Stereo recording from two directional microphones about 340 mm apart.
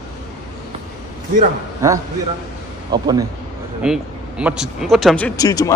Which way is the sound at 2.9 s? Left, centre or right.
Centre.